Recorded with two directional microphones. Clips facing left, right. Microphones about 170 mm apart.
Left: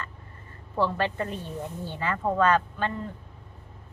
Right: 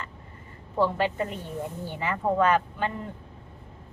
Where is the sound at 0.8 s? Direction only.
15° right (ahead or behind).